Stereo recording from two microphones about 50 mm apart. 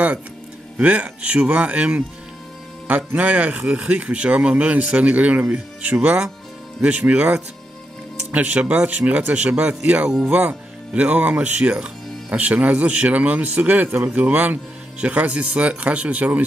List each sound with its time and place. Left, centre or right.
0.7 s speech: right
3.2 s speech: right
10.2 s speech: right